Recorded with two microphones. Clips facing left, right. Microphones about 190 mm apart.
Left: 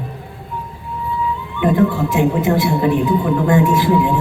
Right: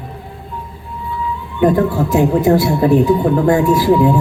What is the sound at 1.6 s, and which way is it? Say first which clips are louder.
Speech: right 2 dB; 40° right (ahead or behind).